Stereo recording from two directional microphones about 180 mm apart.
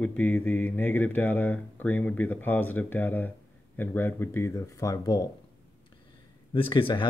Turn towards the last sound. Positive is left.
turn(degrees=25)  # may be behind; listen again after turning